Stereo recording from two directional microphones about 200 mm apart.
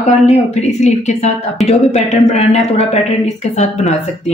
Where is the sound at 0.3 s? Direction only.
35° left (ahead or behind).